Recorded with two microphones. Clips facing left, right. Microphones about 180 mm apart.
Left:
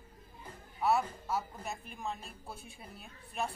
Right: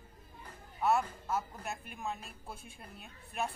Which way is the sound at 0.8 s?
Centre (ahead or behind).